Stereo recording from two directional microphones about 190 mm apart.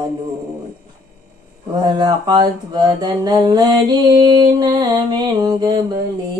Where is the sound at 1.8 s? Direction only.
20° right (ahead or behind).